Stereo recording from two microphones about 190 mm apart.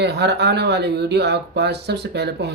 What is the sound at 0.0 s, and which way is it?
Speech, 60° right (ahead or behind).